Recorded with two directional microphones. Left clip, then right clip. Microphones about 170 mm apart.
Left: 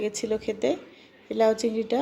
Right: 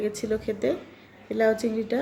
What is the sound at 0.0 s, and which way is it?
A woman's voice, 15° left (ahead or behind).